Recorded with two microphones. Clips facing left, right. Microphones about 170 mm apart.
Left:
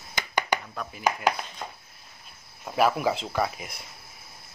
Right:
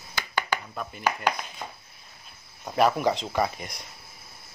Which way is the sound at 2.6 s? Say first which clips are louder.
Right 1 dB; 5° left (ahead or behind).